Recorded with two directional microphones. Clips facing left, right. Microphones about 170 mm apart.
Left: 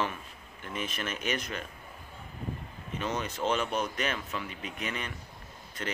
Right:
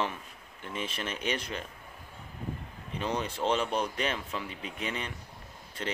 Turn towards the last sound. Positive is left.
turn(degrees=-30)  # may be behind; listen again after turning